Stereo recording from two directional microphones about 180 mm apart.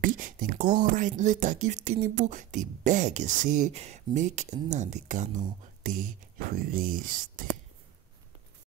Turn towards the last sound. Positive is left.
turn(degrees=-50)  # may be behind; listen again after turning